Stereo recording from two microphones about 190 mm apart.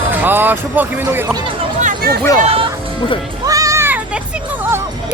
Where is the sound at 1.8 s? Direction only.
45° right (ahead or behind).